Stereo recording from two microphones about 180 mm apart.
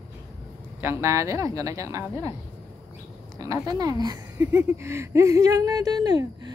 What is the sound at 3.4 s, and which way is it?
A woman's voice, 20° right (ahead or behind).